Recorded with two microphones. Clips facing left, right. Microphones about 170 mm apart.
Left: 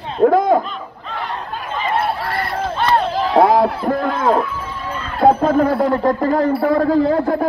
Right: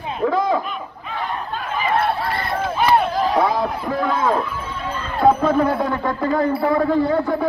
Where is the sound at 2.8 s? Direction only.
10° right (ahead or behind).